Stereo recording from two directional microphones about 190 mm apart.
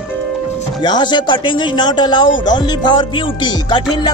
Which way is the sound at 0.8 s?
25° left (ahead or behind).